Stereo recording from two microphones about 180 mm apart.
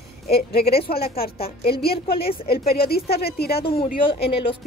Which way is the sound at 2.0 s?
60° left (ahead or behind).